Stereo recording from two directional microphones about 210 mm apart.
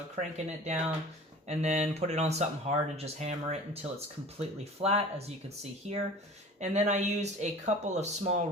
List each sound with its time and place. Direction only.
0.2 s speech: 35° right (ahead or behind)
6.6 s speech: 35° right (ahead or behind)